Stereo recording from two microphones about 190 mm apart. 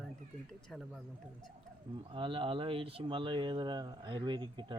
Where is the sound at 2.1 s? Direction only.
25° right (ahead or behind).